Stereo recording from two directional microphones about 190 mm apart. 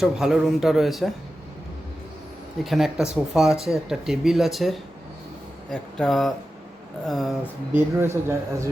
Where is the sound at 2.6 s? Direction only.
Centre (ahead or behind).